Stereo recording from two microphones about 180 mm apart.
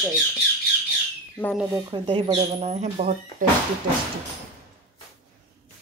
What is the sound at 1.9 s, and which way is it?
Speech, 25° right (ahead or behind).